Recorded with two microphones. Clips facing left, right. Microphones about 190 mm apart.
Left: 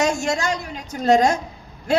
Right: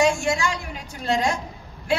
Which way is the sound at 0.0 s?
40° left (ahead or behind).